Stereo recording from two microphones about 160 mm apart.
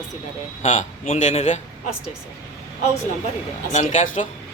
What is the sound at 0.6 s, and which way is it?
A man's voice, 50° left (ahead or behind).